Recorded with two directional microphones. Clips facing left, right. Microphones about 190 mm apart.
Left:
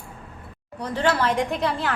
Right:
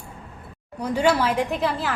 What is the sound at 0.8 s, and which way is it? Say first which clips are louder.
A woman's voice: right 2 dB; 10° right (ahead or behind).